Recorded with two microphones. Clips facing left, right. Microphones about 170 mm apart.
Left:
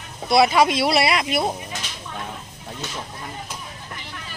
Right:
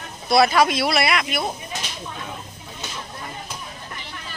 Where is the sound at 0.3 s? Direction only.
20° left (ahead or behind).